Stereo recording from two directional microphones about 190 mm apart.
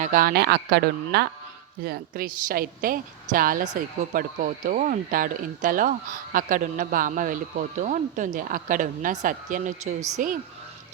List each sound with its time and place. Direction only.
0.0 s speech: 45° right (ahead or behind)